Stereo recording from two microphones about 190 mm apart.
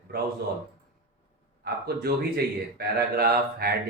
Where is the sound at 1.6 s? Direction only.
55° right (ahead or behind).